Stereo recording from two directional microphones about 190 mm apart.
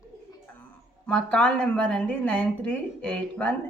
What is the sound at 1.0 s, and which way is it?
A woman's voice, 5° left (ahead or behind).